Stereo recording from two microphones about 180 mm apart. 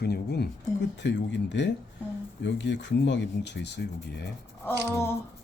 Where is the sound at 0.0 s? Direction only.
65° left (ahead or behind).